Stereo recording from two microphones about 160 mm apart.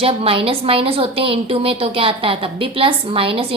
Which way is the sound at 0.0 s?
35° right (ahead or behind).